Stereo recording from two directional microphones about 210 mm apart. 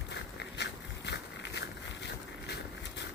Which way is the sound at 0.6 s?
55° left (ahead or behind).